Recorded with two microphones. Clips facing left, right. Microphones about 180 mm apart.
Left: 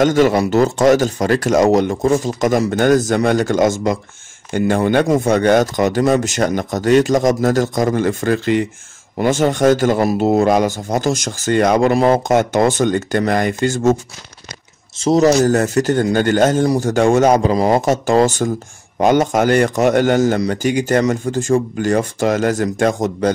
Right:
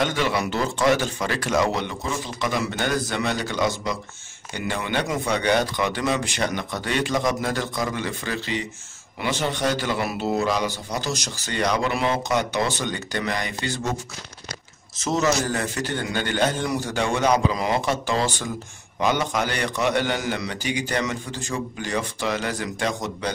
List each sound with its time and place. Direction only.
0.0 s a man's voice: 45° left (ahead or behind)
15.0 s a man's voice: 35° left (ahead or behind)